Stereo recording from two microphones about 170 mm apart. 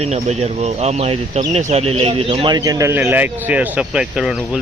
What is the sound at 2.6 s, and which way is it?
Speech, 20° right (ahead or behind).